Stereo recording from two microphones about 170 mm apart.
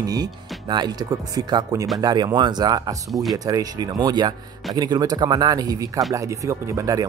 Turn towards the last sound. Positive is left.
turn(degrees=-20)  # may be behind; listen again after turning